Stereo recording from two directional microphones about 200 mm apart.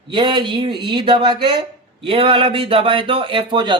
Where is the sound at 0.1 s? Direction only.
25° right (ahead or behind).